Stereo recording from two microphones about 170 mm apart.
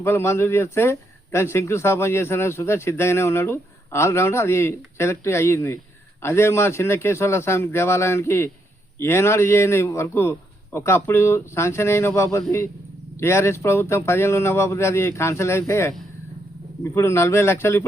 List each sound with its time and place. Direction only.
0.0 s speech: 15° left (ahead or behind)